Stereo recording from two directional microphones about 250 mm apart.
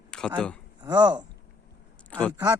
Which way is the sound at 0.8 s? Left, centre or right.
Centre.